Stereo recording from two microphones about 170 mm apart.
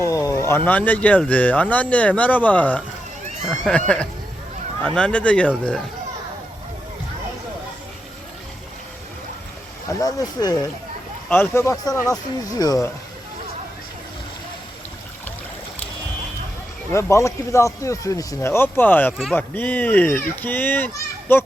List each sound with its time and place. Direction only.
0.0 s speech: 20° left (ahead or behind)
10.0 s speech: 20° left (ahead or behind)
16.9 s speech: 15° left (ahead or behind)